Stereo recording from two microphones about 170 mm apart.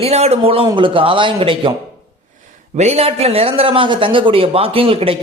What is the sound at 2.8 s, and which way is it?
Speech, 40° right (ahead or behind).